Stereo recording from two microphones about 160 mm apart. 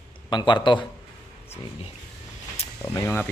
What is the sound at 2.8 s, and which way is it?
Speech, 15° left (ahead or behind).